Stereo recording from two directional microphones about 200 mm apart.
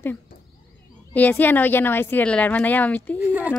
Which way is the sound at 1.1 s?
10° left (ahead or behind).